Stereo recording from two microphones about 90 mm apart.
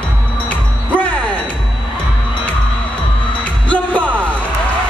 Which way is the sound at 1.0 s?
15° left (ahead or behind).